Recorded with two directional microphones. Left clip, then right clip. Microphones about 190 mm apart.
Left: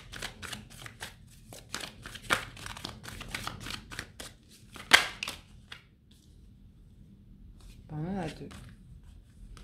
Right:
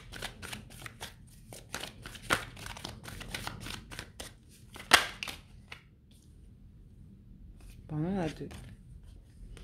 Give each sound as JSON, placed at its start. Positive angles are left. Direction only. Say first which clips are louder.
{"t": 0.1, "sound": "shuffling cards", "louder": "left 2 dB", "side_deg": -10}
{"t": 4.7, "sound": "crushing", "louder": "left 2 dB", "side_deg": -10}
{"t": 7.8, "sound": "a sound", "louder": "right 3 dB", "side_deg": -45}